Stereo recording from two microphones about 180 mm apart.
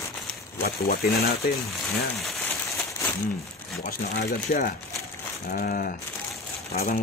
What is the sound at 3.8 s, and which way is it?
Speech, 55° left (ahead or behind).